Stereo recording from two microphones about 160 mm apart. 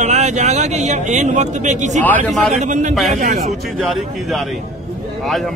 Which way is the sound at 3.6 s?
Centre (ahead or behind).